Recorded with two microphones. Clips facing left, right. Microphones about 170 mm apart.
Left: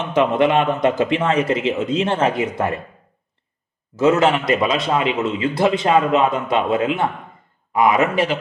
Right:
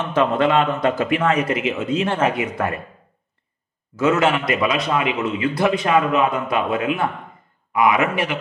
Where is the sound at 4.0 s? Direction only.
30° left (ahead or behind).